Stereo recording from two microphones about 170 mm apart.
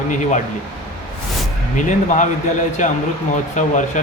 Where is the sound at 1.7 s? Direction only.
45° left (ahead or behind).